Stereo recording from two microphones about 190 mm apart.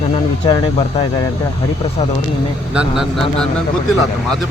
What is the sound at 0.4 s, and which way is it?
Speech, 25° left (ahead or behind).